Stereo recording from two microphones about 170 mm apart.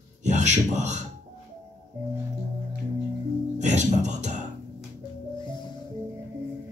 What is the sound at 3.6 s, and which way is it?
Speech, 45° right (ahead or behind).